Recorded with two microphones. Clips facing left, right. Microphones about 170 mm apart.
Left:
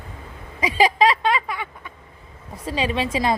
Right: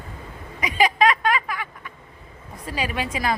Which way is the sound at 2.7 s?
25° left (ahead or behind).